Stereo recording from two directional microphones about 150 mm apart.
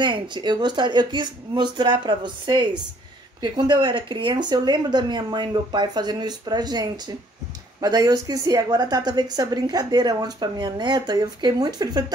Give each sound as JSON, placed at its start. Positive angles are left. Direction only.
{"t": 0.0, "sound": "a woman's voice", "side_deg": -30}